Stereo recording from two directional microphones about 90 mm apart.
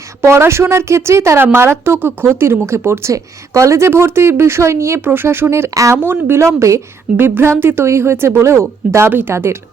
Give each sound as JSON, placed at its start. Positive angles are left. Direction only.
{"t": 0.2, "sound": "speech", "side_deg": -30}
{"t": 6.0, "sound": "speech", "side_deg": -25}
{"t": 7.2, "sound": "speech", "side_deg": -25}